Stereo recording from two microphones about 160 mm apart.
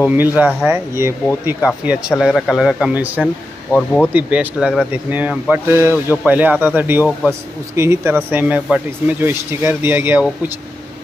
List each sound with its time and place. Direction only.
0.0 s speech: 10° right (ahead or behind)
1.9 s speech: 5° right (ahead or behind)
3.7 s speech: 5° left (ahead or behind)
4.1 s speech: 10° right (ahead or behind)